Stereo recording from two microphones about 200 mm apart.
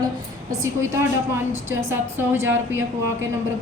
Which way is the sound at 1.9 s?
10° right (ahead or behind).